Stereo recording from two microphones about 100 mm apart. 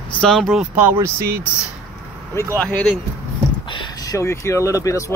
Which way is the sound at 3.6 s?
55° left (ahead or behind).